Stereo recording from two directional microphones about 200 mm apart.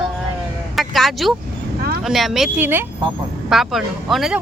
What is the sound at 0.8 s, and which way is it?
Speech, centre (ahead or behind).